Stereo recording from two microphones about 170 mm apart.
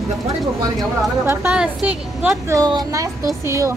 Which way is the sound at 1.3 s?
10° right (ahead or behind).